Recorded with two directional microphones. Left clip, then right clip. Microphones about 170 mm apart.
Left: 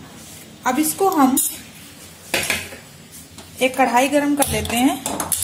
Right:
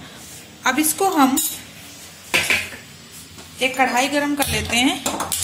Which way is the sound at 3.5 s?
55° left (ahead or behind).